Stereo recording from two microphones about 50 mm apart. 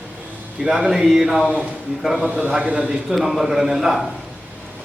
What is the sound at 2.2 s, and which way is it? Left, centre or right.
Speech, right.